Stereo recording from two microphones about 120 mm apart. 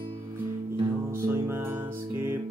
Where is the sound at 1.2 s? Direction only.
25° right (ahead or behind).